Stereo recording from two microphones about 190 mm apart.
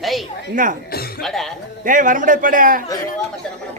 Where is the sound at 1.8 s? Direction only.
45° right (ahead or behind).